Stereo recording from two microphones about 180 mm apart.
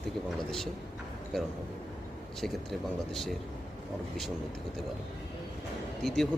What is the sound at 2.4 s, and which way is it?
Speech, centre (ahead or behind).